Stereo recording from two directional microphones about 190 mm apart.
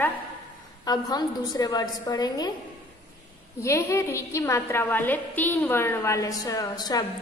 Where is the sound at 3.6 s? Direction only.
15° left (ahead or behind).